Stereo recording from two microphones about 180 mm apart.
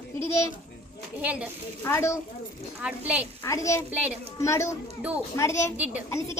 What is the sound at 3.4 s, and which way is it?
A woman's voice, 15° left (ahead or behind).